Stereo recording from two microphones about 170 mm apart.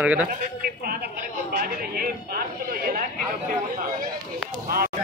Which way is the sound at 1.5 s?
60° right (ahead or behind).